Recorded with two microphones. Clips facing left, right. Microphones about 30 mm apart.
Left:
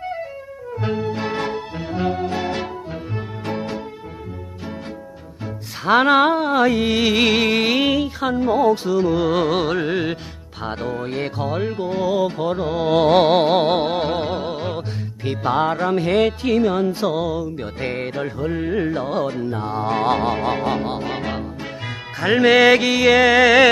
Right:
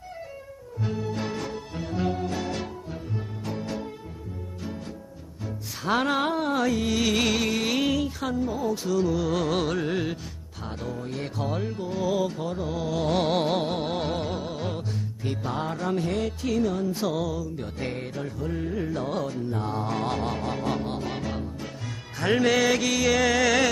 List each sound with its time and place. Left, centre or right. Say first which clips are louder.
0.7 s music: left 7 dB; left
1.0 s music: left 7 dB; left
1.3 s music: left 9 dB; left
1.8 s music: left 4 dB; left
3.4 s music: left 8 dB; left
5.9 s music: left 10 dB; left
8.4 s music: left 12 dB; left
8.8 s music: left 7 dB; left
10.6 s music: left 9 dB; left
13.9 s music: left 7 dB; left
16.9 s music: left 6 dB; left
19.6 s mantra: left 6 dB; left
19.9 s speech: left 12 dB; left
22.2 s music: left 9 dB; left